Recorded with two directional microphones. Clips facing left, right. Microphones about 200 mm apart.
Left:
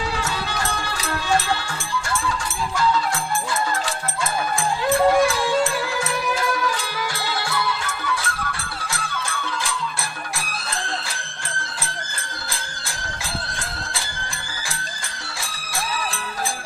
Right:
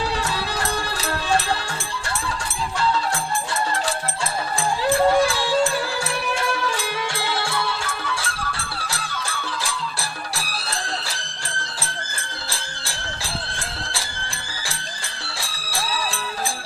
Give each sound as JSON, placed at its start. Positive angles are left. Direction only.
{"t": 0.2, "sound": "music", "side_deg": -35}
{"t": 2.7, "sound": "music", "side_deg": -35}
{"t": 4.8, "sound": "music", "side_deg": -30}